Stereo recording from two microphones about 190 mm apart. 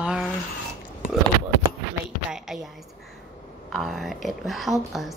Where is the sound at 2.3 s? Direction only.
Centre (ahead or behind).